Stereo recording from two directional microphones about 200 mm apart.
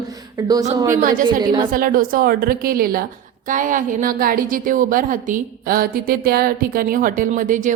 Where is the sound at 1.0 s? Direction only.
45° right (ahead or behind).